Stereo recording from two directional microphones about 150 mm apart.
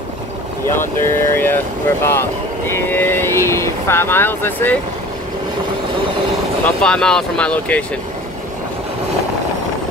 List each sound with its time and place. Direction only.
0.7 s speech: 15° left (ahead or behind)
6.6 s speech: 5° left (ahead or behind)